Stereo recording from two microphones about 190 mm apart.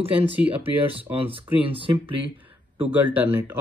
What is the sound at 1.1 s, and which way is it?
Speech, 30° right (ahead or behind).